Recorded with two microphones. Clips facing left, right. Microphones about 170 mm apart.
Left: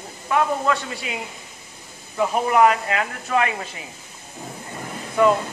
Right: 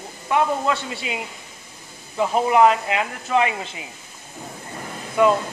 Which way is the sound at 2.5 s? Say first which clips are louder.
Right 1 dB; 15° right (ahead or behind).